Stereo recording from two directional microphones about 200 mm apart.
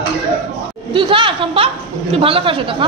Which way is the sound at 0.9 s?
25° right (ahead or behind).